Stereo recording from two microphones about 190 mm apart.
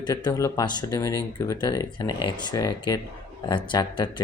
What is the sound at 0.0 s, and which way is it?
Speech, 20° left (ahead or behind).